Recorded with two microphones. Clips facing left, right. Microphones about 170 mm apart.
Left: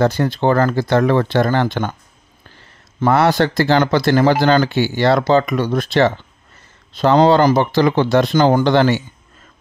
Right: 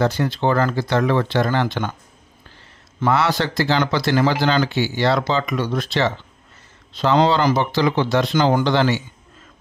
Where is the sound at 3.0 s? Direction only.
50° left (ahead or behind).